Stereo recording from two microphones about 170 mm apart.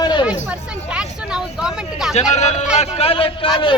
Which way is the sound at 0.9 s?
5° right (ahead or behind).